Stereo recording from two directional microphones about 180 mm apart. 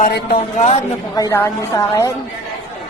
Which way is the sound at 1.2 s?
15° left (ahead or behind).